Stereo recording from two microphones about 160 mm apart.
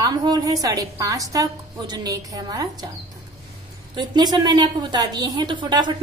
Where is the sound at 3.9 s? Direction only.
25° right (ahead or behind).